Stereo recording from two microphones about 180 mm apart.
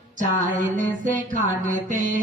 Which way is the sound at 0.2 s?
45° right (ahead or behind).